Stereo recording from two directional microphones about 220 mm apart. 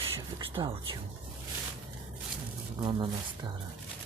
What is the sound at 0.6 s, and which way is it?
Speech, 20° right (ahead or behind).